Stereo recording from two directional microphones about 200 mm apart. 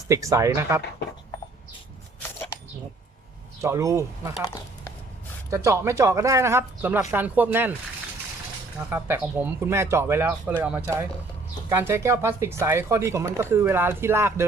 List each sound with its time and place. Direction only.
0.1 s speech: 15° right (ahead or behind)
3.6 s speech: 15° right (ahead or behind)
5.5 s speech: 15° right (ahead or behind)
8.9 s speech: 10° right (ahead or behind)